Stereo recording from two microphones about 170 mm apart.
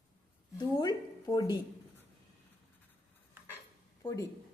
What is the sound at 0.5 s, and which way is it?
A woman's voice, 25° left (ahead or behind).